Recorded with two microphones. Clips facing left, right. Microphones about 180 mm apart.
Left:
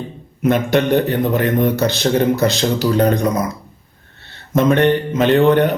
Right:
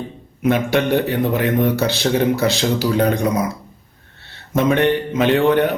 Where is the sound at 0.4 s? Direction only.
5° right (ahead or behind).